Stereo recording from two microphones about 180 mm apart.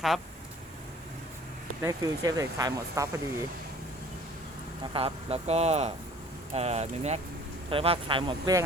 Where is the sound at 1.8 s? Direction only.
20° right (ahead or behind).